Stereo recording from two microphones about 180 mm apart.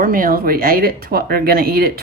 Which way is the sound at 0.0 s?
50° right (ahead or behind).